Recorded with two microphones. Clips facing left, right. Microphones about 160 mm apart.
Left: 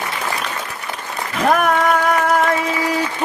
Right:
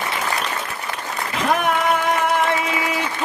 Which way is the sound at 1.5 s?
45° left (ahead or behind).